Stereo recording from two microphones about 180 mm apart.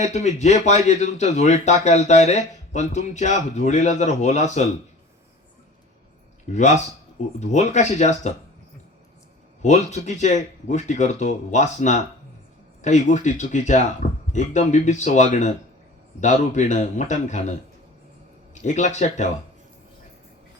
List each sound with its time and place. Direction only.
0.0 s a man's voice: 40° left (ahead or behind)
6.5 s a man's voice: 40° left (ahead or behind)
9.6 s a man's voice: 40° left (ahead or behind)
18.6 s a man's voice: 40° left (ahead or behind)